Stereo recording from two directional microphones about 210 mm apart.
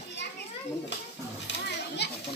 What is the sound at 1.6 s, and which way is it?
Children playing, 50° left (ahead or behind).